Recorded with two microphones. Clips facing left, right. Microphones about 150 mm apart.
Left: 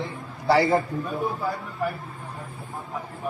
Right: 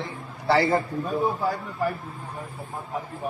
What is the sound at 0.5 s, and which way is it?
Speech, centre (ahead or behind).